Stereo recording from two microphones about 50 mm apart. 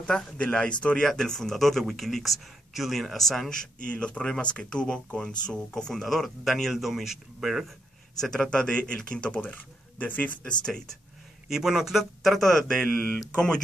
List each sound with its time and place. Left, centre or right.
0.0 s speech: centre
1.0 s speech: centre
8.2 s speech: centre
9.4 s speech: left
10.4 s speech: centre
11.4 s speech: centre